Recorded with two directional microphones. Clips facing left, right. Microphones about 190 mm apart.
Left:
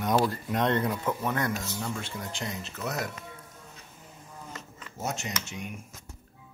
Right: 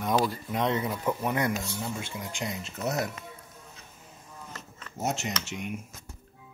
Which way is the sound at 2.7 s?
25° right (ahead or behind).